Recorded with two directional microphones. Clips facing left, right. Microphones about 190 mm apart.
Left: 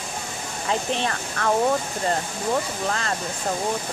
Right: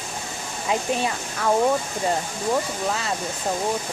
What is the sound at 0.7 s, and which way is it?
Speech, 10° right (ahead or behind).